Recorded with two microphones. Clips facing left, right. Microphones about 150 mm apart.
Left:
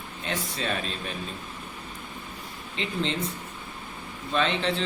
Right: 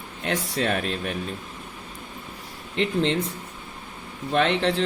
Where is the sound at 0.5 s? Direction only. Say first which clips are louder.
Right 6 dB; 60° right (ahead or behind).